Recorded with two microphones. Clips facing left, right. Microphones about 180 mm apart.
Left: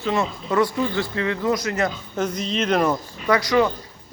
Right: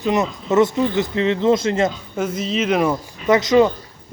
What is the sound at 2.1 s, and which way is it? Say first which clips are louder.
Speech: right 2 dB; 5° right (ahead or behind).